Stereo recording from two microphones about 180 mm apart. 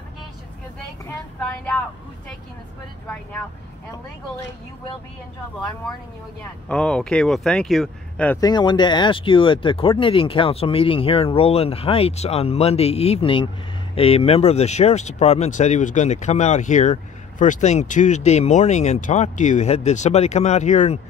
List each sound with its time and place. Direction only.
6.7 s speech: 5° left (ahead or behind)
8.4 s speech: 25° left (ahead or behind); by 21.0 s 40° left (ahead or behind)